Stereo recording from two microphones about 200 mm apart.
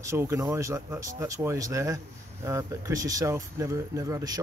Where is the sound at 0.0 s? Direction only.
15° right (ahead or behind).